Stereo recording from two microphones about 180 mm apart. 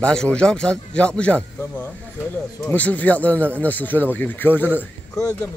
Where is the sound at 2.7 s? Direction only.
10° left (ahead or behind).